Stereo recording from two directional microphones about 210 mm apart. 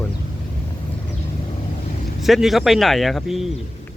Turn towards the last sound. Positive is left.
turn(degrees=0)  # may be behind; listen again after turning